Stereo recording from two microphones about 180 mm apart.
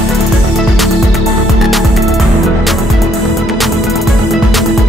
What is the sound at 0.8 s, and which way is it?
Music, centre (ahead or behind).